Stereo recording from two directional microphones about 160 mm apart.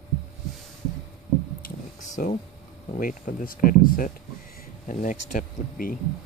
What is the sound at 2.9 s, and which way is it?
Speech, 55° left (ahead or behind).